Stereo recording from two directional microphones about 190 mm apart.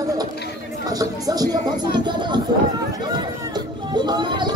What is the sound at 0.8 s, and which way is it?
Speech, 20° right (ahead or behind).